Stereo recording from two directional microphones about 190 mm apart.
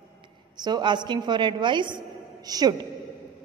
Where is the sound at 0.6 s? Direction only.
20° right (ahead or behind).